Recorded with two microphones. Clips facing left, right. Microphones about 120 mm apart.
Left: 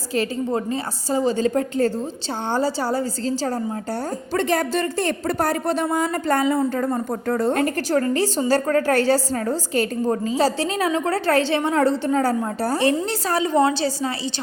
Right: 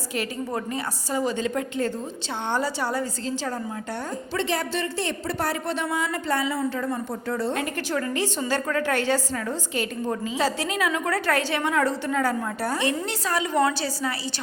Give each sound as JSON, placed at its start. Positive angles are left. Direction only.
{"t": 0.1, "sound": "a woman's voice", "side_deg": 30}
{"t": 4.4, "sound": "a woman's voice", "side_deg": 45}